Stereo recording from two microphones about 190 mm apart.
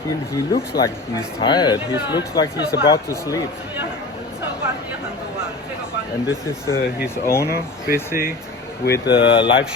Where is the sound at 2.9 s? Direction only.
20° left (ahead or behind).